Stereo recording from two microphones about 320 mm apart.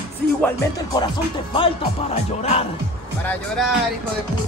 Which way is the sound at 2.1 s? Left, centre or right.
Centre.